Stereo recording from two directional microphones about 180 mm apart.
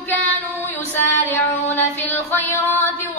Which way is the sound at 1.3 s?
10° left (ahead or behind).